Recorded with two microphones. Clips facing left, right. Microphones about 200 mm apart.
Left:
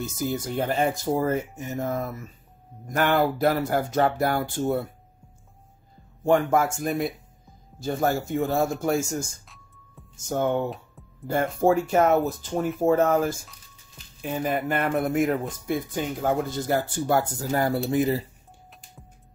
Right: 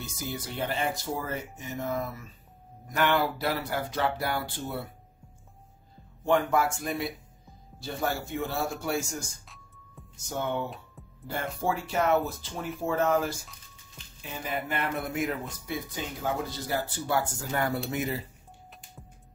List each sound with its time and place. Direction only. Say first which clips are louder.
0.4 s speech: left 5 dB; 45° left (ahead or behind)
6.2 s speech: left 4 dB; 45° left (ahead or behind)
11.6 s speech: left 8 dB; 45° left (ahead or behind)